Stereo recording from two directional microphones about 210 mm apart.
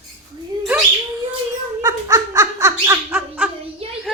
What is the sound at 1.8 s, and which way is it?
Laughter, 15° right (ahead or behind).